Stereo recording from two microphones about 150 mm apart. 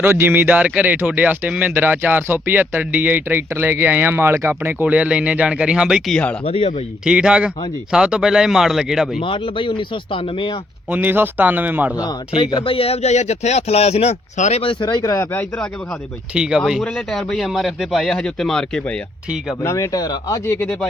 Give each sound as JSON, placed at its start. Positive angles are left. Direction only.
{"t": 0.0, "sound": "speech", "side_deg": -15}
{"t": 6.4, "sound": "speech", "side_deg": 40}
{"t": 7.0, "sound": "speech", "side_deg": -5}
{"t": 9.2, "sound": "speech", "side_deg": 35}
{"t": 10.8, "sound": "speech", "side_deg": -10}
{"t": 12.3, "sound": "speech", "side_deg": 30}
{"t": 14.6, "sound": "speech", "side_deg": 35}
{"t": 16.3, "sound": "speech", "side_deg": -5}
{"t": 19.6, "sound": "speech", "side_deg": 20}